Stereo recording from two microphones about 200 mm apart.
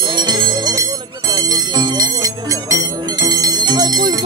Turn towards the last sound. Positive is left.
turn(degrees=-20)  # may be behind; listen again after turning